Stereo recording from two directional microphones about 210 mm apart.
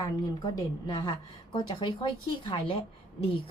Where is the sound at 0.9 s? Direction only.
20° left (ahead or behind).